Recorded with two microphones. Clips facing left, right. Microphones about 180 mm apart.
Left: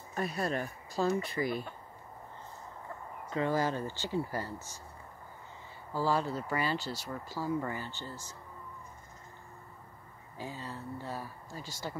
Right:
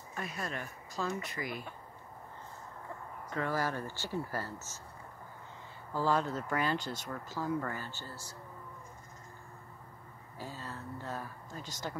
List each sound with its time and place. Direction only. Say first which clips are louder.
0.1 s speech: left 7 dB; 35° left (ahead or behind)
3.3 s speech: left 4 dB; 20° left (ahead or behind)
5.9 s speech: even; 10° left (ahead or behind)
10.3 s speech: left 2 dB; 15° left (ahead or behind)